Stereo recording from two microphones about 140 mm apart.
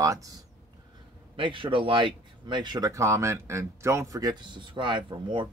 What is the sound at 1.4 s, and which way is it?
Speech, 40° right (ahead or behind).